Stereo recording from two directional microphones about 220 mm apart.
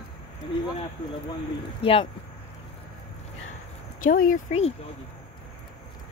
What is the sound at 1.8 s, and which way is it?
Speech, 25° left (ahead or behind).